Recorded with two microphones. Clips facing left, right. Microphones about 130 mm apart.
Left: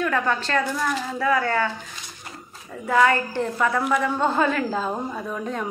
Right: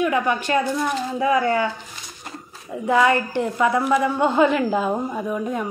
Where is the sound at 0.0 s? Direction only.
15° right (ahead or behind).